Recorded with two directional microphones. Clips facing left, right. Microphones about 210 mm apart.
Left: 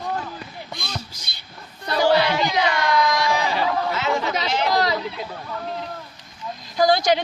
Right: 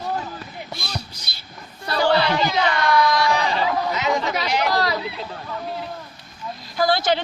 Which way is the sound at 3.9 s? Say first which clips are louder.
Right 1 dB; 15° right (ahead or behind).